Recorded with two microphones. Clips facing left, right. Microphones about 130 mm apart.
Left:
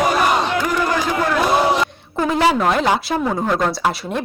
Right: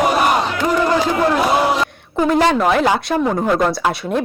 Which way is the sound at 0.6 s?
25° right (ahead or behind).